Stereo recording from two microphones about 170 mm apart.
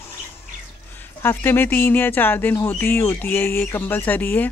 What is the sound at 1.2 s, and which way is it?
Speech, 15° left (ahead or behind).